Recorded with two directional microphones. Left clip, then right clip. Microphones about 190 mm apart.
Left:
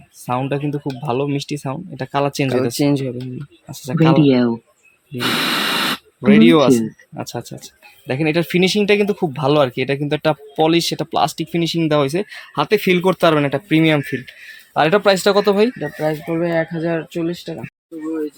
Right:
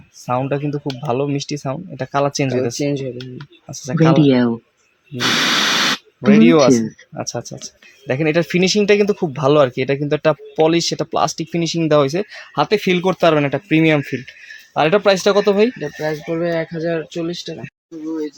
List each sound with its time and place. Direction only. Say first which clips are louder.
0.3 s speech: right 1 dB; centre (ahead or behind)
2.7 s speech: left 3 dB; 55° left (ahead or behind)
3.8 s speech: even; centre (ahead or behind)
15.8 s speech: left 1 dB; 35° left (ahead or behind)